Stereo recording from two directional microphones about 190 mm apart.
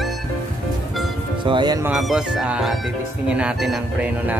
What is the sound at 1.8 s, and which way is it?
Speech, 5° right (ahead or behind).